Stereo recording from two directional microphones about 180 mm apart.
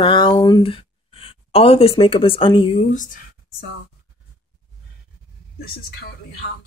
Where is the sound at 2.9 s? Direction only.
45° left (ahead or behind).